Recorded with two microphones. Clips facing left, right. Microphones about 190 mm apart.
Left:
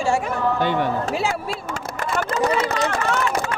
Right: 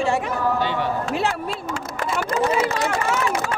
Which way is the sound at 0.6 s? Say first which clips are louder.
Left 3 dB; 50° left (ahead or behind).